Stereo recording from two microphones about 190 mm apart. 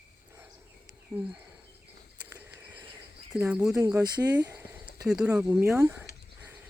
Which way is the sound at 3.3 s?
5° right (ahead or behind).